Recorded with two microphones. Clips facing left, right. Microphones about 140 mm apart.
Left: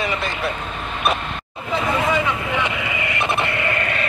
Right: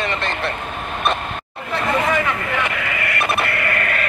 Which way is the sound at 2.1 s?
10° left (ahead or behind).